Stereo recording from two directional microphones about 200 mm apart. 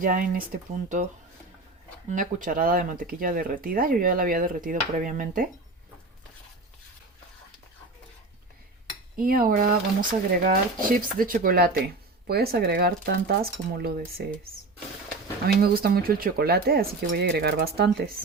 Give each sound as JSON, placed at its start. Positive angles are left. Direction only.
{"t": 0.0, "sound": "speech", "side_deg": -45}
{"t": 2.0, "sound": "speech", "side_deg": -40}
{"t": 9.1, "sound": "speech", "side_deg": -45}
{"t": 15.6, "sound": "speech", "side_deg": -50}